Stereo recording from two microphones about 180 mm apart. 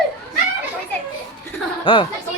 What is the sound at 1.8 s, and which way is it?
Speech, 30° left (ahead or behind).